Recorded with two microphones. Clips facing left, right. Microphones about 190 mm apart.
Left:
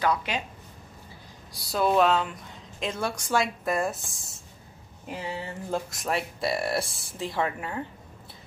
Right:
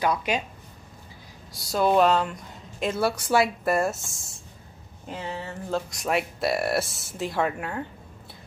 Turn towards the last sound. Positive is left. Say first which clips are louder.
# right 2 dB
turn(degrees=-5)  # may be behind; listen again after turning